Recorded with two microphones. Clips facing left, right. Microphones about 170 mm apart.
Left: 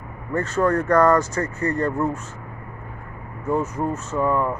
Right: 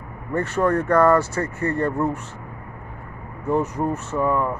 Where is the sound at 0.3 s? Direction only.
10° right (ahead or behind).